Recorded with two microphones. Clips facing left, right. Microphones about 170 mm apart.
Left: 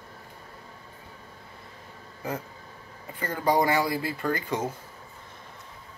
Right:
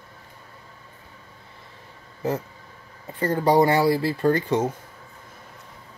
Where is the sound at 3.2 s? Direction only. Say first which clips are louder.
Right 6 dB; 30° right (ahead or behind).